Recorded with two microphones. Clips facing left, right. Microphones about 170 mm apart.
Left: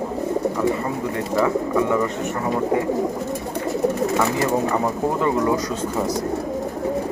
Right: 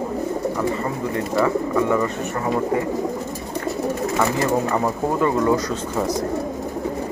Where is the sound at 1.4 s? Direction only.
10° left (ahead or behind).